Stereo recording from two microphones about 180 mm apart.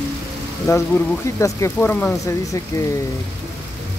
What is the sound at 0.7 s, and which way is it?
Speech, 15° left (ahead or behind).